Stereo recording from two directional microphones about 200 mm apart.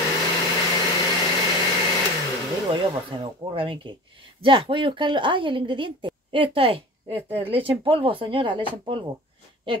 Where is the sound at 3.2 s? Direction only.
25° right (ahead or behind).